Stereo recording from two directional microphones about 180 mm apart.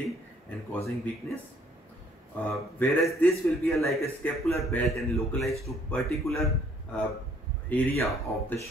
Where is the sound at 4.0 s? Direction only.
15° left (ahead or behind).